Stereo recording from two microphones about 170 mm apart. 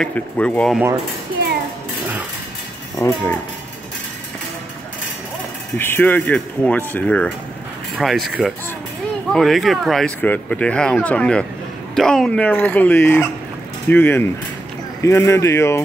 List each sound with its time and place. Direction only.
0.0 s speech: 5° left (ahead or behind)
3.0 s speech: 15° left (ahead or behind)
5.8 s speech: 10° left (ahead or behind)